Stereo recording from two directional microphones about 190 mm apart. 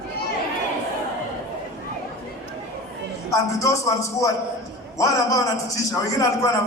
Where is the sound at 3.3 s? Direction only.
15° left (ahead or behind).